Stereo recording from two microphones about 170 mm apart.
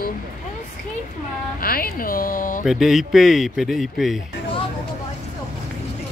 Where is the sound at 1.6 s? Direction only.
60° left (ahead or behind).